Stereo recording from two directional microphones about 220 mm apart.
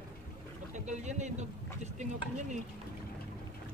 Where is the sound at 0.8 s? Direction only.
30° right (ahead or behind).